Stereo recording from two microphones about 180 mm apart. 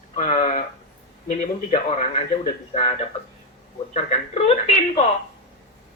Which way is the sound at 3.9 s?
35° left (ahead or behind).